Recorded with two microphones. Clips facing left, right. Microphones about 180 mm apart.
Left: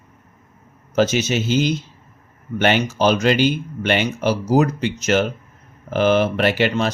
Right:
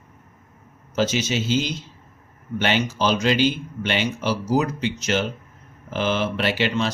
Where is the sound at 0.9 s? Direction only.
50° left (ahead or behind).